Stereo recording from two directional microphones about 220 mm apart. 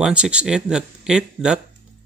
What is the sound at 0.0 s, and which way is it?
Speech, 5° right (ahead or behind).